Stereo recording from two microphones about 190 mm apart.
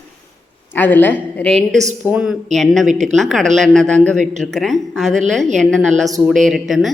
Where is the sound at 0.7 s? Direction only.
10° left (ahead or behind).